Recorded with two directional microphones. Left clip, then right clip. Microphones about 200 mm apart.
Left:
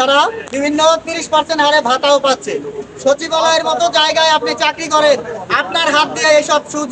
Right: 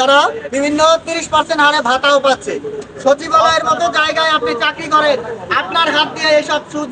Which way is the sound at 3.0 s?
35° left (ahead or behind).